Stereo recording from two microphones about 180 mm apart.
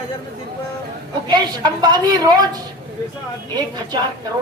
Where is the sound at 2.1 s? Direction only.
20° right (ahead or behind).